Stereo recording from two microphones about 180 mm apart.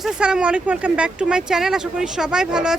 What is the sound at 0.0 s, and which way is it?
Speech, 5° right (ahead or behind).